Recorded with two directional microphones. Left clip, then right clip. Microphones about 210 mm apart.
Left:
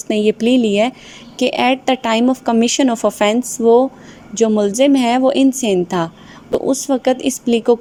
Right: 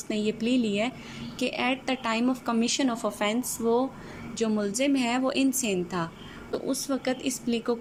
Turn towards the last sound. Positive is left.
turn(degrees=35)  # may be behind; listen again after turning